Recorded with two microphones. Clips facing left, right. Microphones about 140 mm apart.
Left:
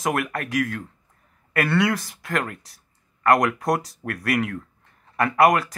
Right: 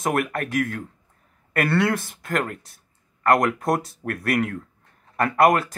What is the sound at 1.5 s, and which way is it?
Speech, 50° right (ahead or behind).